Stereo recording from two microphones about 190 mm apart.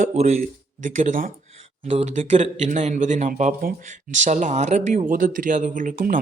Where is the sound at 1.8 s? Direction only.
35° right (ahead or behind).